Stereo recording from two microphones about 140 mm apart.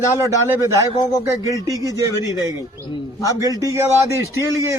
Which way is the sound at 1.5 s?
25° right (ahead or behind).